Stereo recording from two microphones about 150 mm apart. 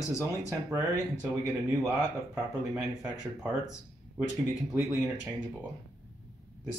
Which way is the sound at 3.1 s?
5° right (ahead or behind).